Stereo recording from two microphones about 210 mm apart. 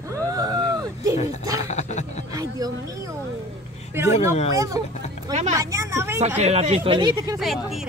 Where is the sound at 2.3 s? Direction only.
15° right (ahead or behind).